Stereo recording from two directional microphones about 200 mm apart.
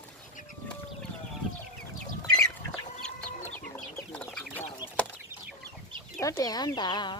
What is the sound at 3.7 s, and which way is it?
Chicken, 5° left (ahead or behind).